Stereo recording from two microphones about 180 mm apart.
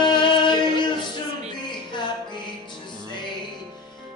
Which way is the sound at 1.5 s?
25° left (ahead or behind).